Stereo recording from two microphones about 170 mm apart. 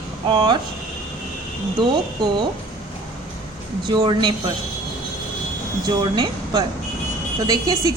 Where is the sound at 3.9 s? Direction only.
25° right (ahead or behind).